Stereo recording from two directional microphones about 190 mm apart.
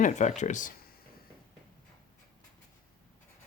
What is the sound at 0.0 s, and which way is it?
Speech, 40° left (ahead or behind).